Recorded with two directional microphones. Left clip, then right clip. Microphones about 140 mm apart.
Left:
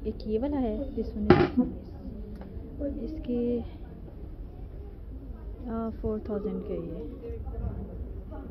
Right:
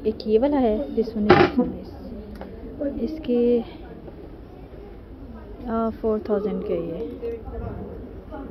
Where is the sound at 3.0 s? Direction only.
35° right (ahead or behind).